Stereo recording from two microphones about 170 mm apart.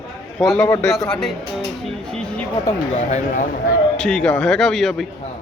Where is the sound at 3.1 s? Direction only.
50° left (ahead or behind).